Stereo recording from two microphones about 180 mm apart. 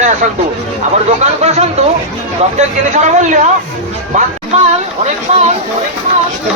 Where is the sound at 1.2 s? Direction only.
40° right (ahead or behind).